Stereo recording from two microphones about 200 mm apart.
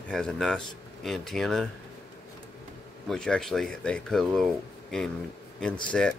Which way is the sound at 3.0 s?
5° left (ahead or behind).